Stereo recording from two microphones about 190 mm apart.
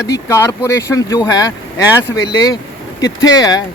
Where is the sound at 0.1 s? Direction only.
15° left (ahead or behind).